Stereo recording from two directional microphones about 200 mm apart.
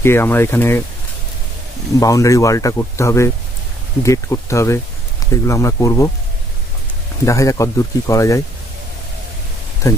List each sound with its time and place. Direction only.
0.0 s speech: 10° left (ahead or behind)
2.0 s speech: 15° left (ahead or behind)
7.2 s speech: 15° left (ahead or behind)
9.8 s speech: 15° left (ahead or behind)